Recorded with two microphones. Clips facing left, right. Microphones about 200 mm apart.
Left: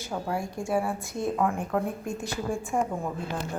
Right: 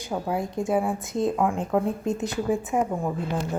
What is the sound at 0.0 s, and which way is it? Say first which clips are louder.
A woman's voice: right 3 dB; 15° right (ahead or behind).